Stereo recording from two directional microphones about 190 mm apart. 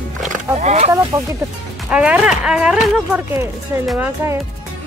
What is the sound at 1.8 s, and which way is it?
Speech, 5° right (ahead or behind).